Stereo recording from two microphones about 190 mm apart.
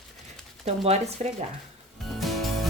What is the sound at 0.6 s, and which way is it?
Speech, 35° right (ahead or behind).